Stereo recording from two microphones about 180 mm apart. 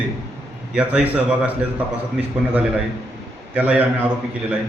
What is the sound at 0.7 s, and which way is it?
Speech, 5° right (ahead or behind).